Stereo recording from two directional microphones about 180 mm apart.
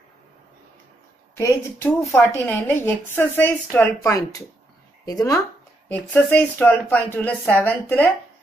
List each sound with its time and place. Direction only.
1.3 s a woman's voice: 15° left (ahead or behind)